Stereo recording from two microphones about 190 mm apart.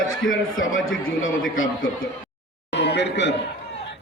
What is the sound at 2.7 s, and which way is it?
Speech, 65° left (ahead or behind).